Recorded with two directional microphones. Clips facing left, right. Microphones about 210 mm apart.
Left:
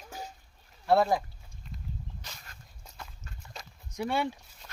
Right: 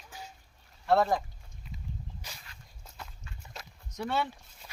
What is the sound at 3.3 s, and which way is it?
Walk, 40° left (ahead or behind).